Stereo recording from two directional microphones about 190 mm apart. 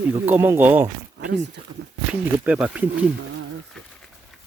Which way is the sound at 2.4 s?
10° right (ahead or behind).